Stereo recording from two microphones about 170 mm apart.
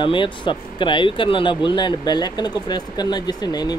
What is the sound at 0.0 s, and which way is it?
Speech, 30° left (ahead or behind).